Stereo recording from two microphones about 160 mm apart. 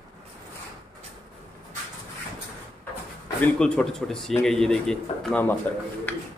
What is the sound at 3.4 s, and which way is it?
A man's voice, 5° left (ahead or behind).